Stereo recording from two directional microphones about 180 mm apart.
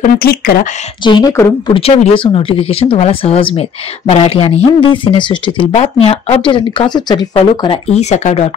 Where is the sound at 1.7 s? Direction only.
30° left (ahead or behind).